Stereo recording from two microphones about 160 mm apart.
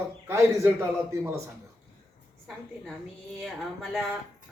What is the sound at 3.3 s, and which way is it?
Speech, centre (ahead or behind).